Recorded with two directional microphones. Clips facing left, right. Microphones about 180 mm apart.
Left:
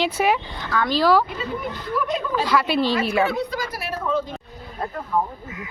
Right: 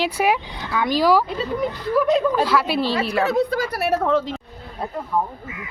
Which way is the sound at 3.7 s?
70° right (ahead or behind).